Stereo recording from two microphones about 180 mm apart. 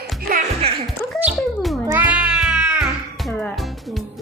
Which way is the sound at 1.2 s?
Centre (ahead or behind).